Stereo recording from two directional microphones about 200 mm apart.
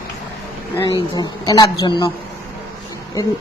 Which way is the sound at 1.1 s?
20° left (ahead or behind).